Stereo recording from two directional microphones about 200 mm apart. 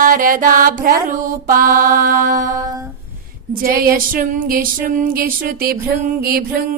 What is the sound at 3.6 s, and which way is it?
Music, 50° right (ahead or behind).